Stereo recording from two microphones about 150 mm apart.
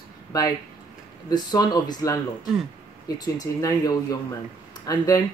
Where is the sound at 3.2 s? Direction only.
25° left (ahead or behind).